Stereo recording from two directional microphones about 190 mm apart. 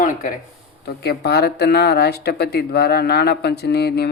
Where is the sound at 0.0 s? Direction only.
45° left (ahead or behind).